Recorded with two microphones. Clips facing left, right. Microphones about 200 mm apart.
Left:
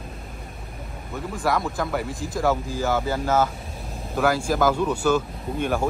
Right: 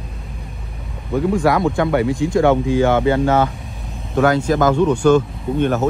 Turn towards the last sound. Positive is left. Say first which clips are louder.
# right 7 dB
turn(degrees=10)  # may be behind; listen again after turning